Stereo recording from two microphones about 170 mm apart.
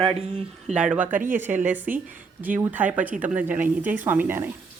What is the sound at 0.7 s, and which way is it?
Speech, 5° right (ahead or behind).